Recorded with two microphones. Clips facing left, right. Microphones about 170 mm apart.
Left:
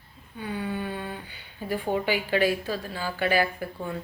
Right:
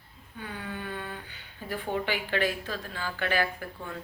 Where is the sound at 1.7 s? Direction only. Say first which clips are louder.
Left 4 dB; 15° left (ahead or behind).